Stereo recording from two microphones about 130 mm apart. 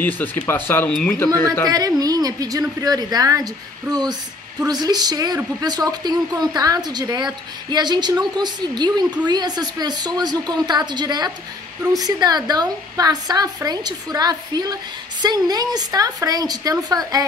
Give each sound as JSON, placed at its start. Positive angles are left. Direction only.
{"t": 0.0, "sound": "speech", "side_deg": 15}
{"t": 1.7, "sound": "a woman's voice", "side_deg": -30}